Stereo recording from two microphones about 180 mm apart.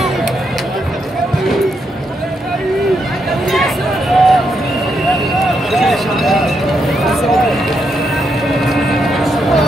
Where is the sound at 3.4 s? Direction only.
Centre (ahead or behind).